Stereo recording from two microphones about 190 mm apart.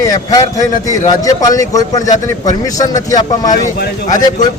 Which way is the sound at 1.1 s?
20° left (ahead or behind).